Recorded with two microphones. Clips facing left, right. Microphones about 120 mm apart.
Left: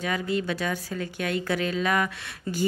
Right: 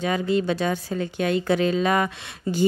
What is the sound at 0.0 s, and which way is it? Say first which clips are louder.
Speech: right 5 dB; 25° right (ahead or behind).